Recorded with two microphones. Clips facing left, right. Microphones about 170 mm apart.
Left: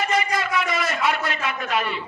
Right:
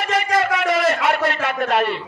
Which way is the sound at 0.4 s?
70° right (ahead or behind).